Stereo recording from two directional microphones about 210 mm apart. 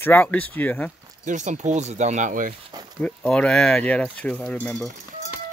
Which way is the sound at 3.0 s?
5° left (ahead or behind).